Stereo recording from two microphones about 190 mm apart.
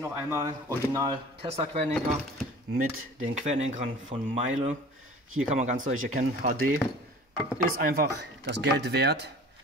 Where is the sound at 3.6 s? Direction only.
35° right (ahead or behind).